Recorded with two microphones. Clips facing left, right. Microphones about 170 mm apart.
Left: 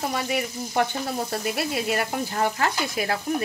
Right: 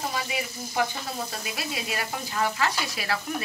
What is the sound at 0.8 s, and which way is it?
Frying, 60° left (ahead or behind).